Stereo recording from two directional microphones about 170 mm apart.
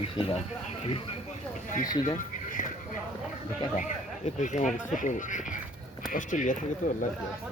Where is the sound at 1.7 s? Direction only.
55° left (ahead or behind).